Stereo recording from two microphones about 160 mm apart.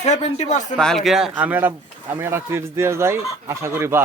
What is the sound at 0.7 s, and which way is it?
Speech, 5° left (ahead or behind).